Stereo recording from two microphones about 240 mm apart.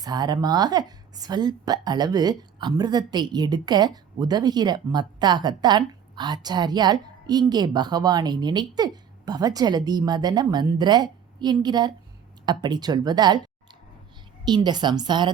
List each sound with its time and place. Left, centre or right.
0.0 s a woman's voice: centre